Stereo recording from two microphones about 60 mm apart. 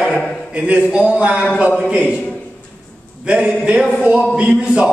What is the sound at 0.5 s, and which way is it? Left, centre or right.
A man's voice, right.